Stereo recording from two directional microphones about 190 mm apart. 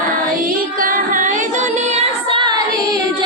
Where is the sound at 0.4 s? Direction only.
50° right (ahead or behind).